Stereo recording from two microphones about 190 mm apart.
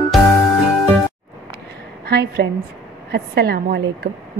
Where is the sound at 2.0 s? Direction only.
55° right (ahead or behind).